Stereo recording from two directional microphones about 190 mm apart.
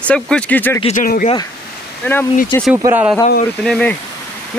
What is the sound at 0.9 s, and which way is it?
Speech, 45° left (ahead or behind).